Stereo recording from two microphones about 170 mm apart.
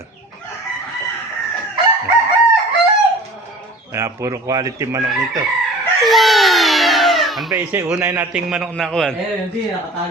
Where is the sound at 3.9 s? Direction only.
15° right (ahead or behind).